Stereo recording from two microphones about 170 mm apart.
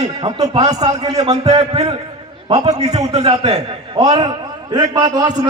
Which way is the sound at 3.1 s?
35° right (ahead or behind).